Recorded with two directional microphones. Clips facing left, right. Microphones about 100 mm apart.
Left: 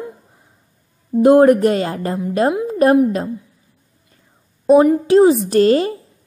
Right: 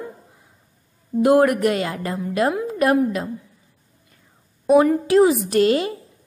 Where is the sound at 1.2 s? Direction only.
30° left (ahead or behind).